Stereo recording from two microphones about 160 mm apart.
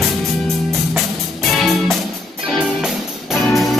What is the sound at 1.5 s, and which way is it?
Music, centre (ahead or behind).